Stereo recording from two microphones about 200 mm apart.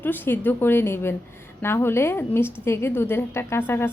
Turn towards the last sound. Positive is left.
turn(degrees=10)  # may be behind; listen again after turning